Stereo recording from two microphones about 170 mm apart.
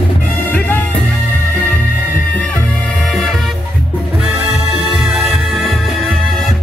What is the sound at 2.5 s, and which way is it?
Music, 5° left (ahead or behind).